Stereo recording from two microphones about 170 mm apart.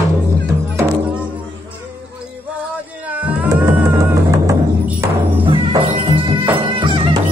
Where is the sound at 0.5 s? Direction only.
15° right (ahead or behind).